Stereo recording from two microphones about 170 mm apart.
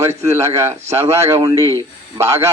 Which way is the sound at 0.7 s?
40° right (ahead or behind).